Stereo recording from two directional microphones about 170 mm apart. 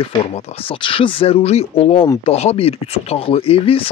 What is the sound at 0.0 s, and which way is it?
Speech, 30° left (ahead or behind).